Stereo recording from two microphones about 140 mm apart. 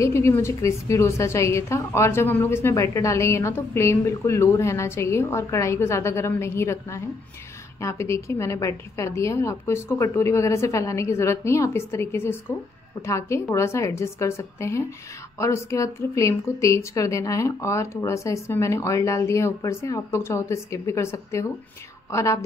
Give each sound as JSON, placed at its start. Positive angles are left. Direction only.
{"t": 0.0, "sound": "speech", "side_deg": 20}